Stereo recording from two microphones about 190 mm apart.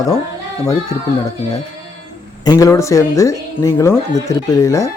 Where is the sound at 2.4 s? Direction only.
20° left (ahead or behind).